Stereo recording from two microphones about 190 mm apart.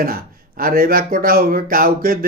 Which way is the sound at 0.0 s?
50° right (ahead or behind).